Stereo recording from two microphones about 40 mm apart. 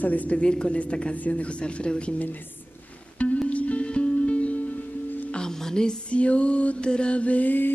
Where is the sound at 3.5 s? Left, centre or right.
Left.